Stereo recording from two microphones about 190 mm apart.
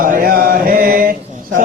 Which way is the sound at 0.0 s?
45° right (ahead or behind).